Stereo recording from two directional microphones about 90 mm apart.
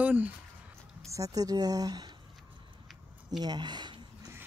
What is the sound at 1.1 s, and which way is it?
Speech, 40° right (ahead or behind).